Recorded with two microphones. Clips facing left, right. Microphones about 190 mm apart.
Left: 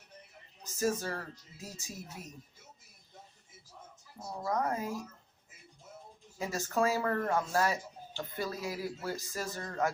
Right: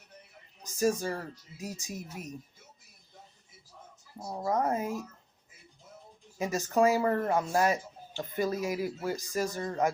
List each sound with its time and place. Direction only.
0.6 s speech: 15° right (ahead or behind)
4.4 s speech: 25° right (ahead or behind)
6.4 s speech: 15° right (ahead or behind)